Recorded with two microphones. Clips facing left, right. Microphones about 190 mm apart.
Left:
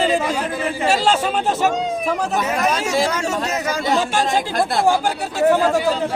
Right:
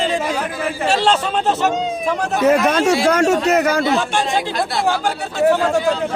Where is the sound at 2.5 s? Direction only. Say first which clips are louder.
Right 6 dB; 60° right (ahead or behind).